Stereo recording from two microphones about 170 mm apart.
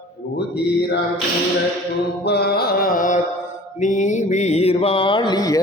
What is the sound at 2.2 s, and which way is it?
Carnatic music, 75° left (ahead or behind).